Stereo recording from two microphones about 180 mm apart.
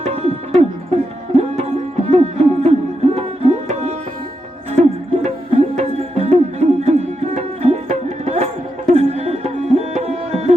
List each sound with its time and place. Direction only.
0.0 s music: 35° right (ahead or behind)
8.9 s tabla: 35° right (ahead or behind)